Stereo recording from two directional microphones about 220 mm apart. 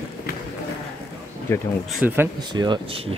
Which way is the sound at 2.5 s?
20° right (ahead or behind).